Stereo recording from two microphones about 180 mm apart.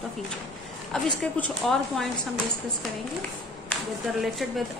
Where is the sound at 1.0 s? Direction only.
5° left (ahead or behind).